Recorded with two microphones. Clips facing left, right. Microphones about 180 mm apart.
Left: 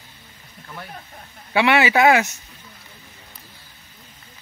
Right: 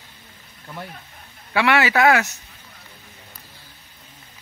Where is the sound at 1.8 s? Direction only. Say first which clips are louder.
Left 1 dB; 20° left (ahead or behind).